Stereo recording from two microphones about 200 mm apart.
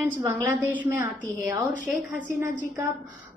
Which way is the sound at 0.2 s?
15° right (ahead or behind).